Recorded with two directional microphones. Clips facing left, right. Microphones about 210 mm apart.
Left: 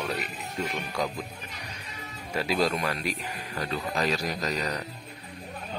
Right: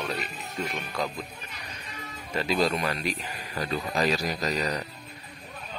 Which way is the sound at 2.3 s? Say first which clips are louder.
Right 1 dB; 5° left (ahead or behind).